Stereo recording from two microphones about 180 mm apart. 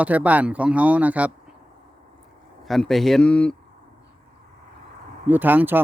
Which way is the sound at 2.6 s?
Centre (ahead or behind).